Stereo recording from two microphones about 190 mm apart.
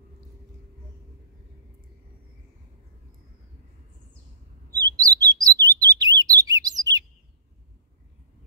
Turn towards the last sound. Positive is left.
turn(degrees=-20)  # may be behind; listen again after turning